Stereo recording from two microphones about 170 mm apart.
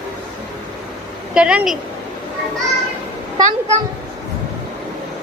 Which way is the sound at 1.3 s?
5° right (ahead or behind).